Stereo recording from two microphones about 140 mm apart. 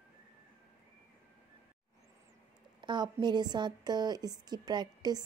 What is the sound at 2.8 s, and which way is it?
A woman's voice, 30° right (ahead or behind).